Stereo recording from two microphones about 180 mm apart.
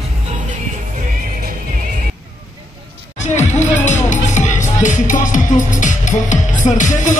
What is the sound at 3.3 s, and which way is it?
Music, 40° left (ahead or behind).